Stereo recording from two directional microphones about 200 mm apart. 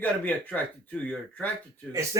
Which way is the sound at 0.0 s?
10° left (ahead or behind).